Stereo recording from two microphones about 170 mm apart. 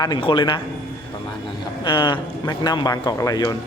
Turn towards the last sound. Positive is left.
turn(degrees=20)  # may be behind; listen again after turning